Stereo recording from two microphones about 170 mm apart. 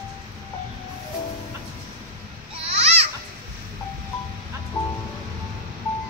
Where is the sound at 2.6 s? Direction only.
35° right (ahead or behind).